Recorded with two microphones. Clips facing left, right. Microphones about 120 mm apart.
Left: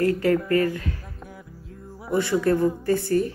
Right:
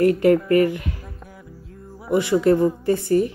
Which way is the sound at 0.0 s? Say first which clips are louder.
Right 5 dB; 20° right (ahead or behind).